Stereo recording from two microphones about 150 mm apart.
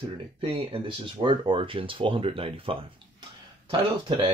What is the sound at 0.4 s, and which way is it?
Speech, 35° right (ahead or behind).